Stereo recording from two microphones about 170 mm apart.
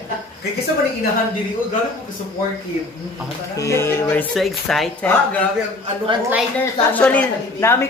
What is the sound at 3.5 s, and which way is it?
Speech, 20° left (ahead or behind).